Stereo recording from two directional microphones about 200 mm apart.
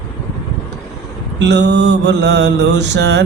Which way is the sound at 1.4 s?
60° right (ahead or behind).